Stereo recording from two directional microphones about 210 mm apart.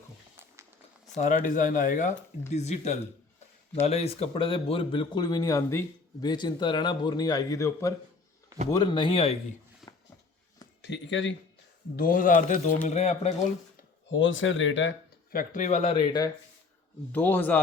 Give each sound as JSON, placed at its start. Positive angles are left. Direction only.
{"t": 1.1, "sound": "a man's voice", "side_deg": 40}
{"t": 9.8, "sound": "a sound", "side_deg": 0}
{"t": 10.8, "sound": "speech", "side_deg": 55}
{"t": 11.9, "sound": "speech", "side_deg": 40}
{"t": 14.1, "sound": "speech", "side_deg": 65}
{"t": 15.3, "sound": "a man's voice", "side_deg": 40}
{"t": 17.1, "sound": "a man's voice", "side_deg": 10}